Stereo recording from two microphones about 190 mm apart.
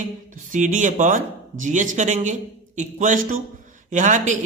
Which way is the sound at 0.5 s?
40° right (ahead or behind).